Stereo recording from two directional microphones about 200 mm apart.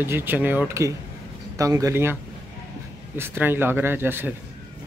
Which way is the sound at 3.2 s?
10° right (ahead or behind).